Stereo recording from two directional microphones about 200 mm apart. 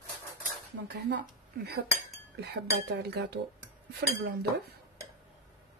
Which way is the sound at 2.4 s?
55° right (ahead or behind).